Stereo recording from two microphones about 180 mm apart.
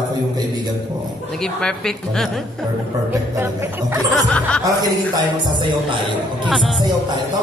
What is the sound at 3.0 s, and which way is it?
Music, 15° right (ahead or behind).